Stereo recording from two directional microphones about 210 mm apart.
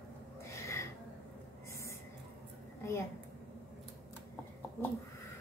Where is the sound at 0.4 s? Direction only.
15° left (ahead or behind).